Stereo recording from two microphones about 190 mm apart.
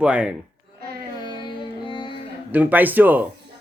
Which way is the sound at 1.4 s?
25° left (ahead or behind).